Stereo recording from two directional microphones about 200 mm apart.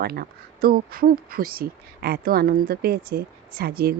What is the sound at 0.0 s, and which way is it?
Speech, 50° right (ahead or behind).